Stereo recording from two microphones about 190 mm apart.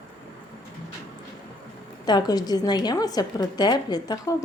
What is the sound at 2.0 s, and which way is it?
A woman's voice, 20° left (ahead or behind).